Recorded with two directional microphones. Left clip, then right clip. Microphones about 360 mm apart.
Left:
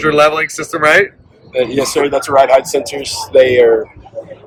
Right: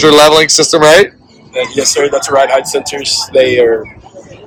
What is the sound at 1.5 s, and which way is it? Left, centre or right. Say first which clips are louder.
Speech: right 1 dB; centre.